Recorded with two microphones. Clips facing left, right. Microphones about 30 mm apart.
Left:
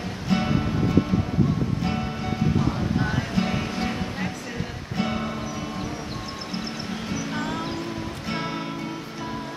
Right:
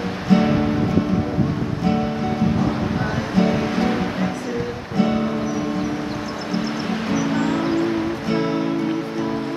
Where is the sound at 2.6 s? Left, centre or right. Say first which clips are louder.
Right 3 dB; centre.